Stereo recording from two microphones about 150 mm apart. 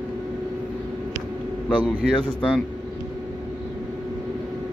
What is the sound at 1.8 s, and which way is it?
Speech, 30° left (ahead or behind).